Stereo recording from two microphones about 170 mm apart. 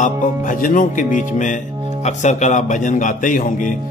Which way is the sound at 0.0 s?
50° left (ahead or behind).